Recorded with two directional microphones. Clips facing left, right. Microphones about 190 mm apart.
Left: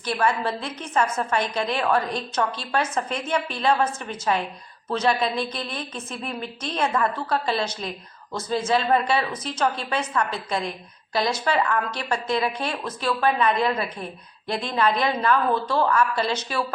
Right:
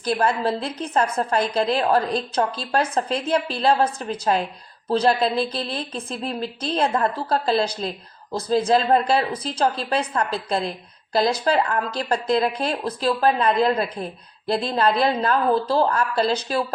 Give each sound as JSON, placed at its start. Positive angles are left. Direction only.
{"t": 0.1, "sound": "a woman's voice", "side_deg": -35}